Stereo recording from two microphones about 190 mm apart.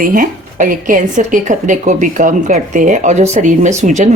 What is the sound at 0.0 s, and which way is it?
A woman's voice, 45° right (ahead or behind).